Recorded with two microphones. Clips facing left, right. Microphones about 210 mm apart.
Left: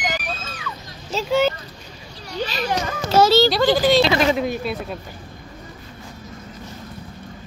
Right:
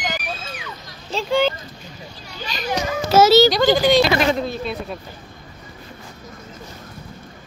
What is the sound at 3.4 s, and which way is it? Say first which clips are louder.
Speech: right 1 dB; centre (ahead or behind).